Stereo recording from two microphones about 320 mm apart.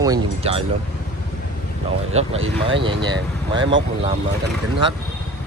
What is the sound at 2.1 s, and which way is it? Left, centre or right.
Speech, centre.